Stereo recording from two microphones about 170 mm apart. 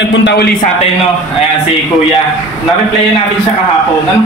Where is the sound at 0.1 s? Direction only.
90° left.